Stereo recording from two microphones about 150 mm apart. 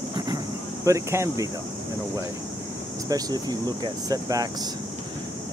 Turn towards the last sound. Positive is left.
turn(degrees=-25)  # may be behind; listen again after turning